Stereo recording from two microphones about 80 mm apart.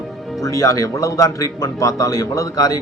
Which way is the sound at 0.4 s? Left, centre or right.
Left.